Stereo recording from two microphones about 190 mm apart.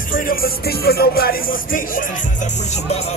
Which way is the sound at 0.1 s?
50° left (ahead or behind).